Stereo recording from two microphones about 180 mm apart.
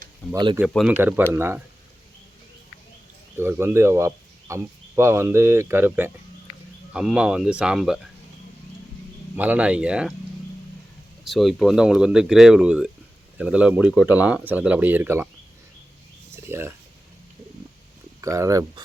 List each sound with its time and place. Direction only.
0.2 s speech: 10° left (ahead or behind)
0.9 s speech: 10° right (ahead or behind)
3.3 s speech: 15° right (ahead or behind)
9.3 s speech: 10° right (ahead or behind)
11.3 s speech: centre (ahead or behind)
16.3 s a sound: 15° right (ahead or behind)
18.2 s speech: 15° right (ahead or behind)